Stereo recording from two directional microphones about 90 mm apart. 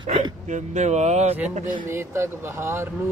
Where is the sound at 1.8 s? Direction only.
30° right (ahead or behind).